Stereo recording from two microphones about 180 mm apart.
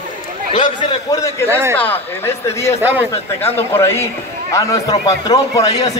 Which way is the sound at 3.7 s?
15° left (ahead or behind).